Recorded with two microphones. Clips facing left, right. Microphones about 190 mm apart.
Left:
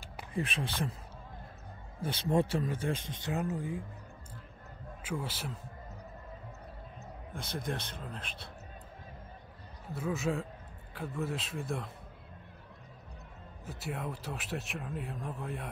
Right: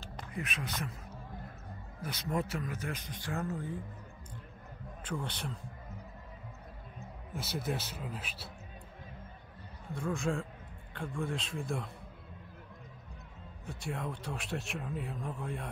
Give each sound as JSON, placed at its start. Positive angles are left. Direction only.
{"t": 0.3, "sound": "speech", "side_deg": 30}
{"t": 2.0, "sound": "speech", "side_deg": 30}
{"t": 5.0, "sound": "speech", "side_deg": 5}
{"t": 7.3, "sound": "speech", "side_deg": -5}
{"t": 9.9, "sound": "speech", "side_deg": 5}
{"t": 13.7, "sound": "speech", "side_deg": 0}